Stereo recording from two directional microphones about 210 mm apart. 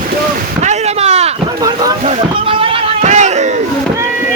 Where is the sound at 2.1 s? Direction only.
30° right (ahead or behind).